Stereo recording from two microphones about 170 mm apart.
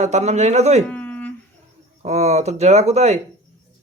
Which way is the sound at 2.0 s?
40° right (ahead or behind).